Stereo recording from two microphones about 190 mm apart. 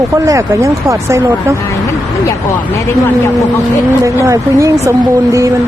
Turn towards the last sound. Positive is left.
turn(degrees=-15)  # may be behind; listen again after turning